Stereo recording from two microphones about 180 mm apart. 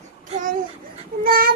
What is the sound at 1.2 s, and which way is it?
Speech, 55° right (ahead or behind).